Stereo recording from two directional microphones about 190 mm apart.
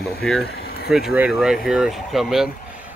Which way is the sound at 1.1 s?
5° right (ahead or behind).